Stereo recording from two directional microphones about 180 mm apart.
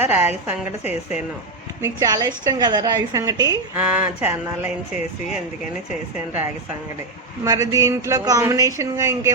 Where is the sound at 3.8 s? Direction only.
10° right (ahead or behind).